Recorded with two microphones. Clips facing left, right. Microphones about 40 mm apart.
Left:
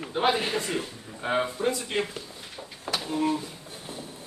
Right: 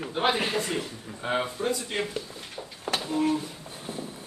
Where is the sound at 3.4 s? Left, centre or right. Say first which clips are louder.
Right 1 dB; right.